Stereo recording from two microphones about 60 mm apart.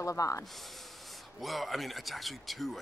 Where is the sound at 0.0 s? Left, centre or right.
Left.